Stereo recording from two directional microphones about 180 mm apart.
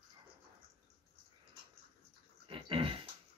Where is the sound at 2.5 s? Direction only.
30° right (ahead or behind).